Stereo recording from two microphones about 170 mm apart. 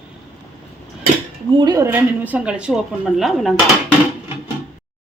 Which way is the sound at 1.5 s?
20° right (ahead or behind).